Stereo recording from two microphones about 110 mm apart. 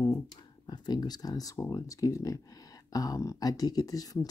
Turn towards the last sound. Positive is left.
turn(degrees=35)  # may be behind; listen again after turning